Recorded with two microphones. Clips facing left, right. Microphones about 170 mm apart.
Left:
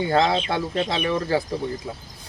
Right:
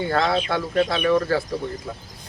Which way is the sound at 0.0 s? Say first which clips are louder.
Left 1 dB; 20° left (ahead or behind).